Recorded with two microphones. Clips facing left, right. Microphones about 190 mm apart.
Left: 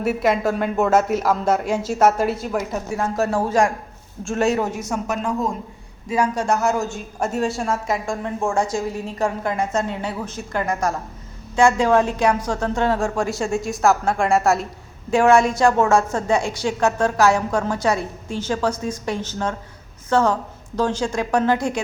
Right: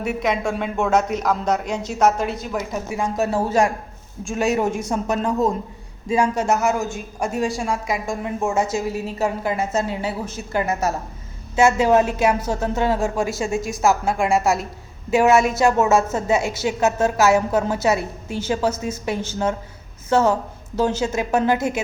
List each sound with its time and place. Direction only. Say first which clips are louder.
0.0 s speech: left 3 dB; 5° left (ahead or behind)
4.3 s a woman's voice: even; 15° right (ahead or behind)
4.7 s speech: right 2 dB; 30° right (ahead or behind)
6.6 s a woman's voice: even; centre (ahead or behind)